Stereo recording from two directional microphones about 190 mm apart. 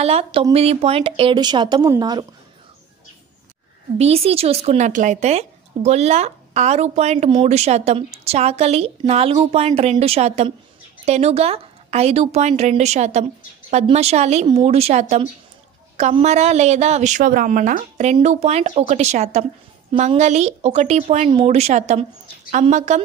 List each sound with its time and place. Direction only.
0.0 s a woman's voice: 35° right (ahead or behind)
4.0 s speech: 30° right (ahead or behind)